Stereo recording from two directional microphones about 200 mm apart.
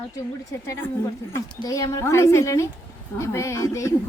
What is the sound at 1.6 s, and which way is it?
Speech, 15° left (ahead or behind).